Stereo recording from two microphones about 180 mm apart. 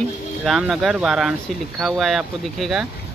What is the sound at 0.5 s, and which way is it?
Speech, 5° right (ahead or behind).